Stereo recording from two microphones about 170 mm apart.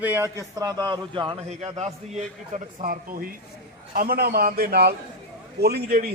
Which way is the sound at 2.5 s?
55° right (ahead or behind).